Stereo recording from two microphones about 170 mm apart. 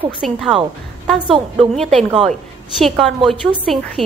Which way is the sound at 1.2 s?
35° right (ahead or behind).